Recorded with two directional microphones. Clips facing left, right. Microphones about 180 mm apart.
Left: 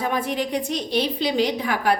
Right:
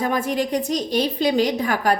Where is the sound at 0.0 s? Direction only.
45° right (ahead or behind).